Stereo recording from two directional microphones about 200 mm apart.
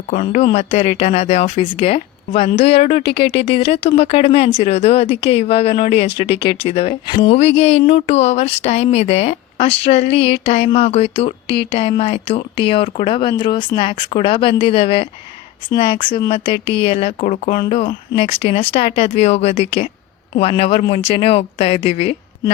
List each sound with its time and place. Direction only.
0.1 s speech: 35° left (ahead or behind)